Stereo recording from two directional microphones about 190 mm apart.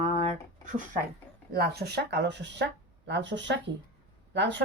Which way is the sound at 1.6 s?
55° right (ahead or behind).